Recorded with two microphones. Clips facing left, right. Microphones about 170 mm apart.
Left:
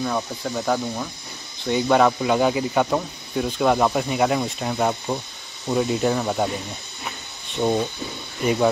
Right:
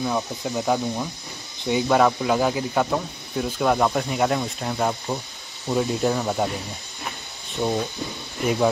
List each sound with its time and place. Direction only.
0.0 s speech: 10° right (ahead or behind)
7.6 s speech: 15° left (ahead or behind)